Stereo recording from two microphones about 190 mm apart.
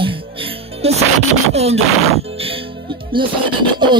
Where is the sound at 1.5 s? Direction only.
35° right (ahead or behind).